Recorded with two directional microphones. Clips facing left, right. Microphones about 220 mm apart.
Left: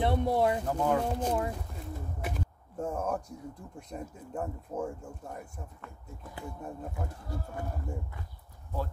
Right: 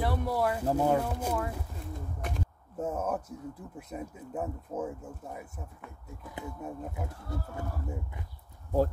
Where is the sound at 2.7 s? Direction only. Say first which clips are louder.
Right 1 dB; 5° right (ahead or behind).